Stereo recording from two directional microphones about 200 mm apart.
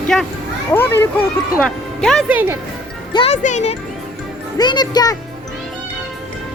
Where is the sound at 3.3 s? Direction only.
35° left (ahead or behind).